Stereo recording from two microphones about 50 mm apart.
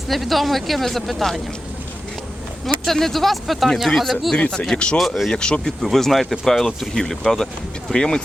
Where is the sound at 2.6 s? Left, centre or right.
Centre.